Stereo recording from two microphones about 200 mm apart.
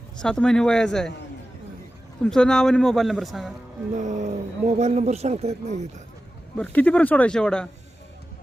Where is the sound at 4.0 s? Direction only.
35° right (ahead or behind).